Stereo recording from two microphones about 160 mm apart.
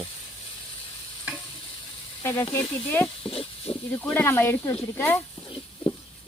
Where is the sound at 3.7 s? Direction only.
35° left (ahead or behind).